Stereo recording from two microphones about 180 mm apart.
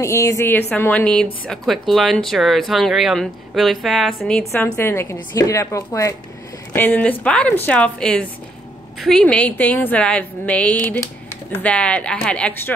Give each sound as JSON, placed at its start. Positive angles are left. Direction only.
{"t": 0.0, "sound": "a woman's voice", "side_deg": 15}
{"t": 4.5, "sound": "a woman's voice", "side_deg": 15}